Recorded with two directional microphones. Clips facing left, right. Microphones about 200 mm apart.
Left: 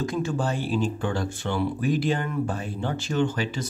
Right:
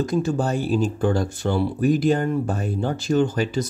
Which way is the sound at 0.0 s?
40° right (ahead or behind).